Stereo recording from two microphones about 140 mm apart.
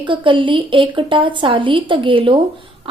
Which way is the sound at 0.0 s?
35° right (ahead or behind).